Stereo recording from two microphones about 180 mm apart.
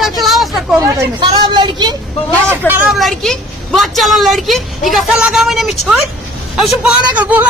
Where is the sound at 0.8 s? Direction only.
15° right (ahead or behind).